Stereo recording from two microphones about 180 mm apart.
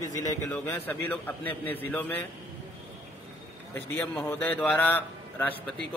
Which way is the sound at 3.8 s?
10° left (ahead or behind).